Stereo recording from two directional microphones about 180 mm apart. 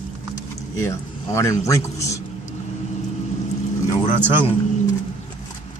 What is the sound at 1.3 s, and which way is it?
Speech, 15° left (ahead or behind).